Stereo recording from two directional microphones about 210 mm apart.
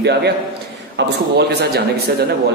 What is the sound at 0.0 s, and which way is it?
A man's voice, 50° right (ahead or behind).